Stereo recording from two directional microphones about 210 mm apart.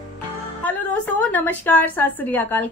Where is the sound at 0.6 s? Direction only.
10° left (ahead or behind).